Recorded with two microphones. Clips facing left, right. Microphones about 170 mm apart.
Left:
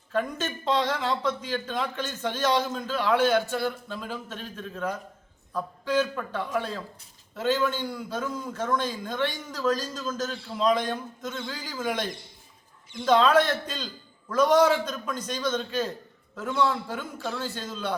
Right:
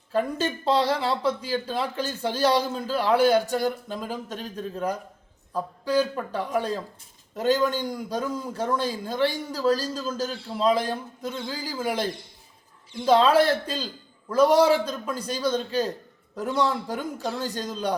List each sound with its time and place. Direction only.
0.1 s a man's voice: 35° right (ahead or behind)